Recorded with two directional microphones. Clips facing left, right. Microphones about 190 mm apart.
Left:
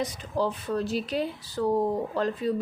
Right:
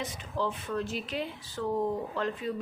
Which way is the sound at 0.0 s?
40° left (ahead or behind).